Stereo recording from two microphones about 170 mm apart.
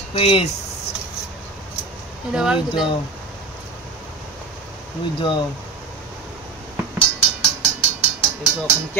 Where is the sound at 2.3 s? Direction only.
5° right (ahead or behind).